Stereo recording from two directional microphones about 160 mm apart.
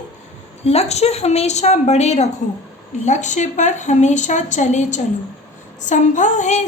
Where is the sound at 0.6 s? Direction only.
40° left (ahead or behind).